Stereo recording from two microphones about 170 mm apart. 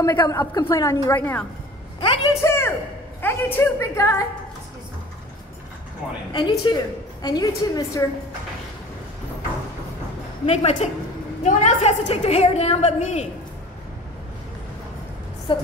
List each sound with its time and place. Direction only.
0.0 s a woman's voice: 20° left (ahead or behind)
2.0 s a woman's voice: 30° left (ahead or behind)
2.4 s a man's voice: 15° left (ahead or behind)
6.3 s a woman's voice: 25° left (ahead or behind)
10.4 s a woman's voice: 40° left (ahead or behind)
15.5 s a woman's voice: 30° left (ahead or behind)